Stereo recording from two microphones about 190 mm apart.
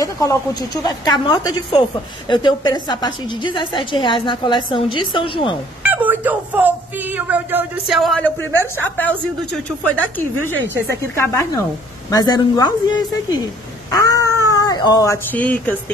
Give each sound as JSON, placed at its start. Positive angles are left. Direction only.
{"t": 0.0, "sound": "a woman's voice", "side_deg": 15}
{"t": 5.9, "sound": "a woman's voice", "side_deg": -10}
{"t": 11.1, "sound": "a woman's voice", "side_deg": 15}
{"t": 13.9, "sound": "speech", "side_deg": 15}